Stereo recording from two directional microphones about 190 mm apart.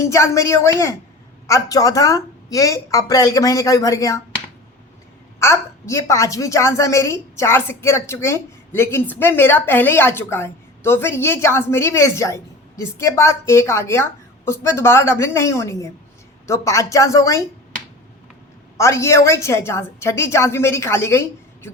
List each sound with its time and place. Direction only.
0.0 s a woman's voice: 15° left (ahead or behind)
5.4 s a woman's voice: 15° left (ahead or behind)
18.8 s a woman's voice: 15° left (ahead or behind)